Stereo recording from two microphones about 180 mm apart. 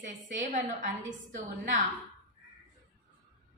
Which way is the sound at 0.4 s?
45° right (ahead or behind).